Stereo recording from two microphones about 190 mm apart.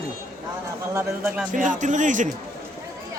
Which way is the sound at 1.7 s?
40° right (ahead or behind).